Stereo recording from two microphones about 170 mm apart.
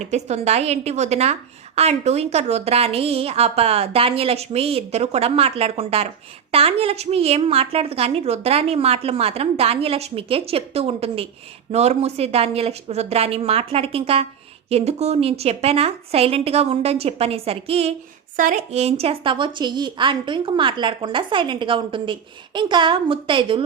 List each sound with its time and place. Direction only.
0.0 s a woman's voice: 40° right (ahead or behind)
18.3 s a woman's voice: 50° right (ahead or behind); by 23.6 s 30° right (ahead or behind)